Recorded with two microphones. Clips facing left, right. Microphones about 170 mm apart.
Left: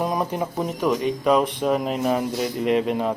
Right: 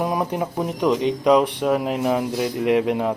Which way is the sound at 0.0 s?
15° right (ahead or behind).